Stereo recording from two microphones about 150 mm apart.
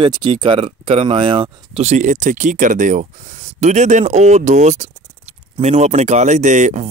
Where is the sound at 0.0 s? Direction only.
30° right (ahead or behind).